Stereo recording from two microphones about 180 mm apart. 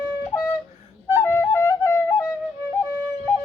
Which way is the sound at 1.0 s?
15° left (ahead or behind).